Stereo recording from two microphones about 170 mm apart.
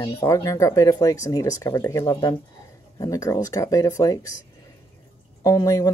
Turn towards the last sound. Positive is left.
turn(degrees=20)  # may be behind; listen again after turning